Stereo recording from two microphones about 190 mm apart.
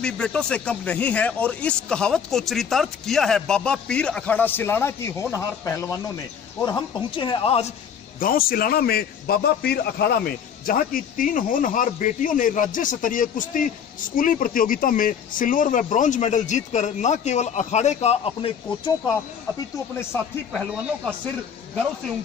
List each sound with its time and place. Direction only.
0.0 s speech: 5° left (ahead or behind); by 7.7 s 30° left (ahead or behind)
8.2 s a man's voice: 50° left (ahead or behind); by 18.5 s 30° left (ahead or behind)
20.5 s speech: 5° right (ahead or behind)